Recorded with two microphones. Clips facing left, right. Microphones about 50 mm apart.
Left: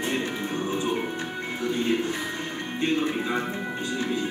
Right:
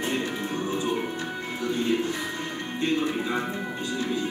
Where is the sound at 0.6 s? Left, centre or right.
Left.